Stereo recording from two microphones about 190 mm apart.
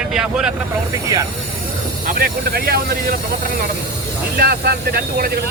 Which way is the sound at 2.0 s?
50° right (ahead or behind).